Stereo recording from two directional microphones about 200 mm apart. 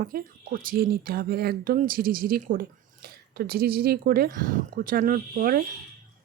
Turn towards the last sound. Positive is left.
turn(degrees=-45)  # may be behind; listen again after turning